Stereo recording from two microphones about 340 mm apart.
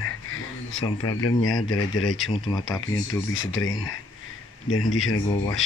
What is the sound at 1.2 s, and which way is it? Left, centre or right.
Speech, left.